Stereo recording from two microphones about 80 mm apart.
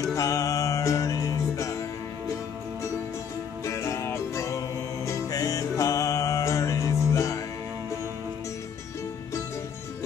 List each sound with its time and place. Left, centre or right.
0.1 s music: left
3.6 s music: left